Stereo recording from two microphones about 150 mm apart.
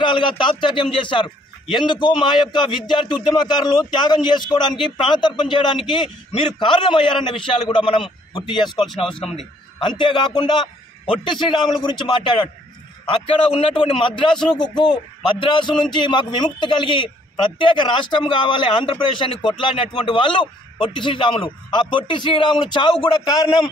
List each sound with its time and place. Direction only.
0.0 s a man's voice: 30° left (ahead or behind)